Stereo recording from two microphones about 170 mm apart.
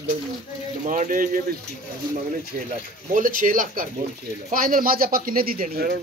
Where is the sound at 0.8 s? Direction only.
50° right (ahead or behind).